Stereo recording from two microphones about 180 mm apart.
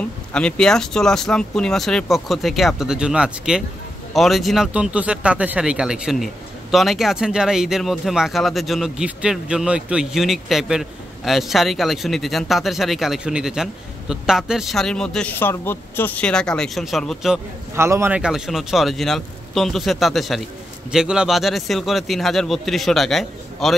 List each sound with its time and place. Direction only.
0.3 s speech: 5° left (ahead or behind)
17.7 s speech: 15° right (ahead or behind); by 23.8 s centre (ahead or behind)